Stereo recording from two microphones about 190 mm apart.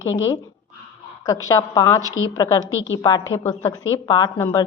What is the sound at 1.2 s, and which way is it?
A woman's voice, 15° left (ahead or behind).